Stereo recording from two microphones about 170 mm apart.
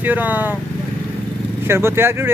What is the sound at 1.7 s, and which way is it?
Speech, 15° right (ahead or behind).